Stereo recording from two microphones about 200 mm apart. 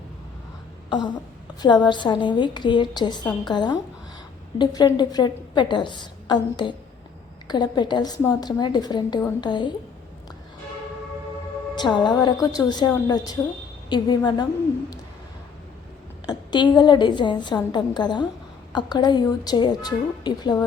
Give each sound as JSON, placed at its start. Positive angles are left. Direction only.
{"t": 0.9, "sound": "a sound", "side_deg": 20}
{"t": 1.6, "sound": "a woman's voice", "side_deg": 20}
{"t": 11.7, "sound": "a woman's voice", "side_deg": 20}
{"t": 16.2, "sound": "a woman's voice", "side_deg": 20}